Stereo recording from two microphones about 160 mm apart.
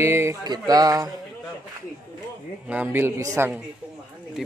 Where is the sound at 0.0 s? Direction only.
15° right (ahead or behind).